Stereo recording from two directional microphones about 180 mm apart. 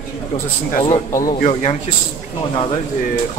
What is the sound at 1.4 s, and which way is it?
Speech, 40° left (ahead or behind).